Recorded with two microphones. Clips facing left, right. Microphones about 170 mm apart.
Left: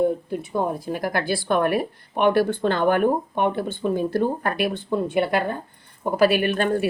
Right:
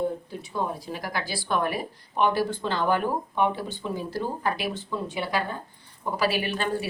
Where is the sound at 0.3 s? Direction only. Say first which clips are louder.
Left 6 dB; 50° left (ahead or behind).